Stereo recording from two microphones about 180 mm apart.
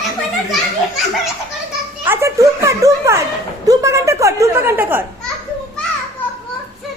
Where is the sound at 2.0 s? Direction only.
15° right (ahead or behind).